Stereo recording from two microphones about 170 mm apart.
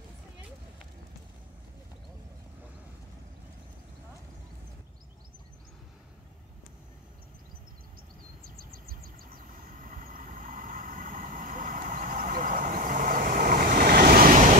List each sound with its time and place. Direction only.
8.5 s vehicle: 60° right (ahead or behind)